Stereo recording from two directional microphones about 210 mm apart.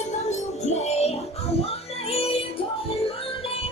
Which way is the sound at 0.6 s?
30° left (ahead or behind).